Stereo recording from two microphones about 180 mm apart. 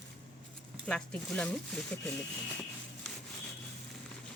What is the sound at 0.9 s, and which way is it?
Speech, 5° left (ahead or behind).